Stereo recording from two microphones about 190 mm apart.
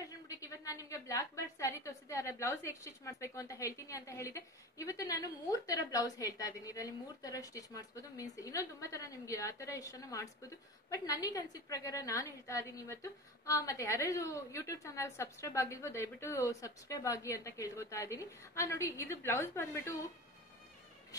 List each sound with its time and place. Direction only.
0.7 s a woman's voice: 15° left (ahead or behind)